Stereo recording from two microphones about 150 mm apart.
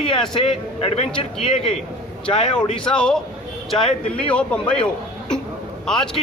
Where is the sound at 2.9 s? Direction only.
5° left (ahead or behind).